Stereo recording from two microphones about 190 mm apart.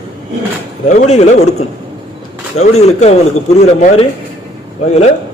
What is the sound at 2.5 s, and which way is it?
A man's voice, 35° left (ahead or behind).